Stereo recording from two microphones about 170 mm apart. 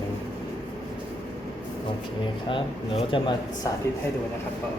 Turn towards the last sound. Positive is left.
turn(degrees=25)  # may be behind; listen again after turning